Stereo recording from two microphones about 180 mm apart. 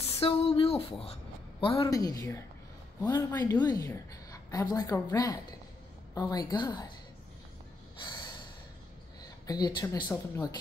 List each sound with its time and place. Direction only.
0.2 s a woman's voice: 30° left (ahead or behind)
1.9 s a woman's voice: 20° left (ahead or behind)
8.0 s snort: 25° left (ahead or behind)
9.2 s a woman's voice: 20° left (ahead or behind)